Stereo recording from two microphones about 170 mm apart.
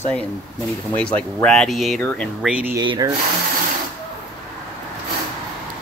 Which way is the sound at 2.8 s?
20° right (ahead or behind).